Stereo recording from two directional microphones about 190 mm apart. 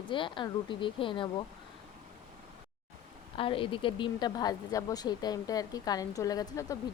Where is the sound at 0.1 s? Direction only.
25° left (ahead or behind).